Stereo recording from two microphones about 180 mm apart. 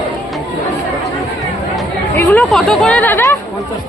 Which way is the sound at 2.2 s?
5° left (ahead or behind).